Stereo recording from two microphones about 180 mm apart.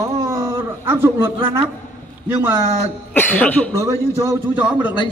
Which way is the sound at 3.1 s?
10° left (ahead or behind).